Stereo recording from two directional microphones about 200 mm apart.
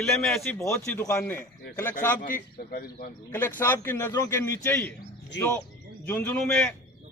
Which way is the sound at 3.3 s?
10° left (ahead or behind).